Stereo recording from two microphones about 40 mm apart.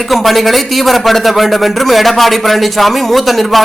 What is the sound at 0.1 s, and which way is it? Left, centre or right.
A man's voice, centre.